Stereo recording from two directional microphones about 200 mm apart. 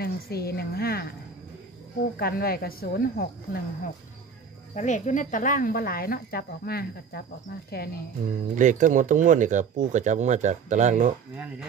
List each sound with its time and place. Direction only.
0.0 s speech: 50° left (ahead or behind)
2.1 s speech: 50° left (ahead or behind)
4.7 s speech: 35° left (ahead or behind)
8.5 s speech: 40° right (ahead or behind)